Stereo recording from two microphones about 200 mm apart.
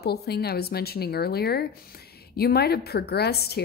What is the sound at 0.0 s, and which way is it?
A woman's voice, 55° left (ahead or behind).